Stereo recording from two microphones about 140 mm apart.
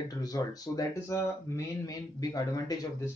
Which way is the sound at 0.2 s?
25° left (ahead or behind).